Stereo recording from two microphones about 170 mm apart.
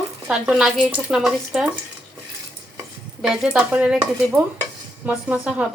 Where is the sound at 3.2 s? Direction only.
5° right (ahead or behind).